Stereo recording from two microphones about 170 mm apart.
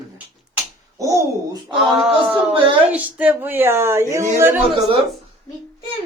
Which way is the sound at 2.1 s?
30° right (ahead or behind).